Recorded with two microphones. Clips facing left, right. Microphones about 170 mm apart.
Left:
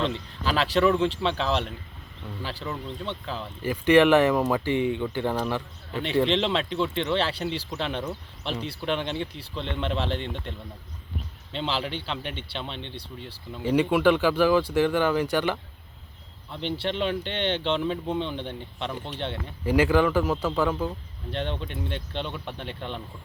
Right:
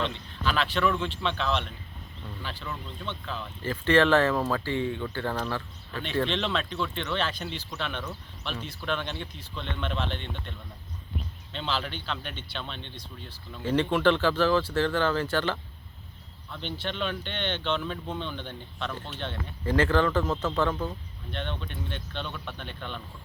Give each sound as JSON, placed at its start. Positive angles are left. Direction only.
{"t": 0.0, "sound": "speech", "side_deg": 35}
{"t": 3.6, "sound": "speech", "side_deg": 15}
{"t": 11.5, "sound": "speech", "side_deg": 25}
{"t": 13.6, "sound": "speech", "side_deg": 10}
{"t": 16.7, "sound": "speech", "side_deg": 30}
{"t": 19.6, "sound": "speech", "side_deg": 10}
{"t": 21.2, "sound": "speech", "side_deg": 35}